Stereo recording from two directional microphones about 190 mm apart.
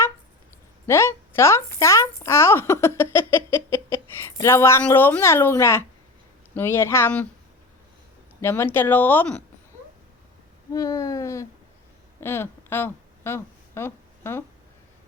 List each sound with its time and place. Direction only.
0.9 s speech: 15° left (ahead or behind)
8.4 s speech: 10° left (ahead or behind)
10.7 s speech: 20° left (ahead or behind)
12.2 s a sound: 10° left (ahead or behind)